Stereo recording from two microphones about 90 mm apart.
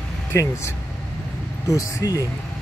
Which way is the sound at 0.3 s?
30° left (ahead or behind).